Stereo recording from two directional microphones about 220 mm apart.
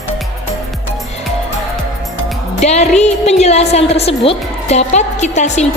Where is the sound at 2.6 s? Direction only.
30° left (ahead or behind).